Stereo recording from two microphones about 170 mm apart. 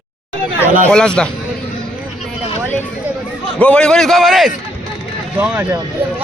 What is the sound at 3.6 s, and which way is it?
Speech, 5° left (ahead or behind).